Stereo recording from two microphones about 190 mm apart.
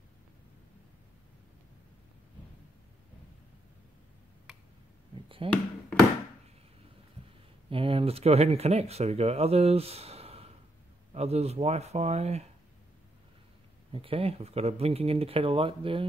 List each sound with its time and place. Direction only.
5.4 s speech: 30° right (ahead or behind)
7.7 s speech: 30° right (ahead or behind)
13.9 s speech: 30° right (ahead or behind)